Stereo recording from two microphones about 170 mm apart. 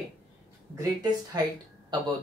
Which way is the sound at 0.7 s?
20° right (ahead or behind).